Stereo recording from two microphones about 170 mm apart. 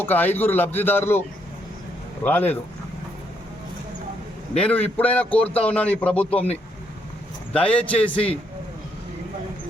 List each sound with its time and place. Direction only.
0.0 s a man's voice: 10° left (ahead or behind)
2.2 s a man's voice: 10° left (ahead or behind)
4.5 s a man's voice: 5° left (ahead or behind)
7.5 s a man's voice: 5° left (ahead or behind)